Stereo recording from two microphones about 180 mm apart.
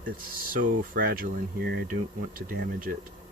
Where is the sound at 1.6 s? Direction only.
70° right (ahead or behind).